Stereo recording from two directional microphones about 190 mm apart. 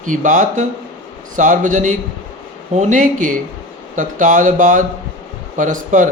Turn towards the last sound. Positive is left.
turn(degrees=-45)  # may be behind; listen again after turning